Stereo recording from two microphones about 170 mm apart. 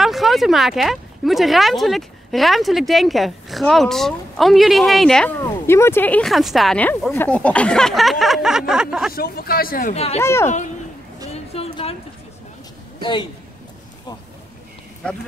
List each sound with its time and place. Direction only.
0.0 s speech: centre (ahead or behind)
5.4 s speech: 15° left (ahead or behind); by 9.1 s 5° right (ahead or behind)
9.1 s a man's voice: 60° left (ahead or behind)
9.9 s speech: 35° left (ahead or behind)
10.2 s speech: 15° left (ahead or behind)
11.5 s a sound: 35° left (ahead or behind)